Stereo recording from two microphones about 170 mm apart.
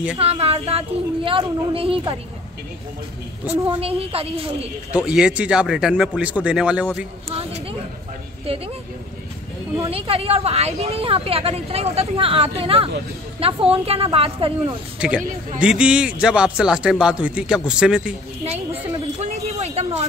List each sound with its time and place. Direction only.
0.2 s speech: 35° right (ahead or behind)
3.8 s speech: 35° right (ahead or behind)
4.9 s speech: 5° right (ahead or behind)
7.2 s a sound: 35° right (ahead or behind)
9.8 s speech: 35° right (ahead or behind)
15.0 s a man's voice: 5° right (ahead or behind)
19.1 s a sound: 40° right (ahead or behind)